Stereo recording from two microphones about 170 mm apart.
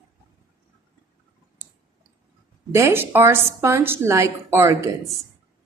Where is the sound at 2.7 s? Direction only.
15° right (ahead or behind).